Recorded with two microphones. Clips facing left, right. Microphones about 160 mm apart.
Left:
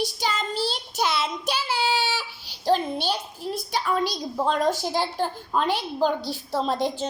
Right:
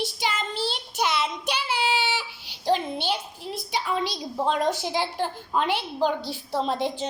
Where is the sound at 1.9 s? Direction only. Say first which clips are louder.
Even; 20° right (ahead or behind).